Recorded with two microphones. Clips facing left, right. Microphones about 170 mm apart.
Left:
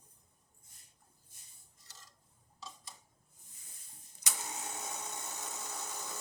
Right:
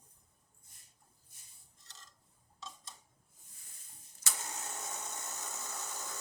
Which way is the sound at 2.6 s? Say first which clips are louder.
Even; 5° left (ahead or behind).